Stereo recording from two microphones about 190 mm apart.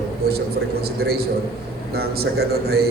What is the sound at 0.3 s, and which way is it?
A man's voice, 55° right (ahead or behind).